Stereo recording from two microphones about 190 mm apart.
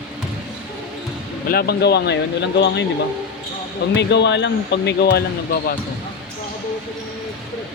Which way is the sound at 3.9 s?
65° left (ahead or behind).